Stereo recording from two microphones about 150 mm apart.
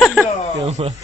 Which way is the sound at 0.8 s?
40° right (ahead or behind).